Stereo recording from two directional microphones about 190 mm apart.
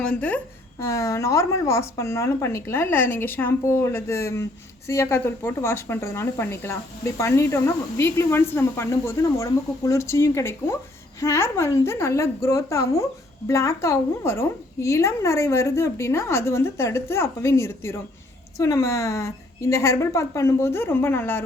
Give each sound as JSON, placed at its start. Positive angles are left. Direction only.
{"t": 0.0, "sound": "speech", "side_deg": 5}